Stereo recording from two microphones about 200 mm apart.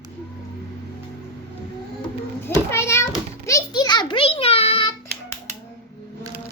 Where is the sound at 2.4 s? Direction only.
15° left (ahead or behind).